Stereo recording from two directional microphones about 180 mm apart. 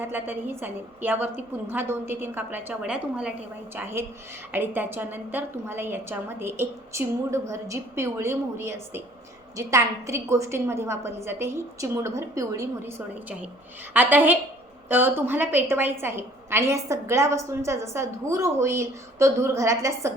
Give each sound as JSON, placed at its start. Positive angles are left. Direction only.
{"t": 0.0, "sound": "a woman's voice", "side_deg": -10}
{"t": 13.9, "sound": "a woman's voice", "side_deg": -10}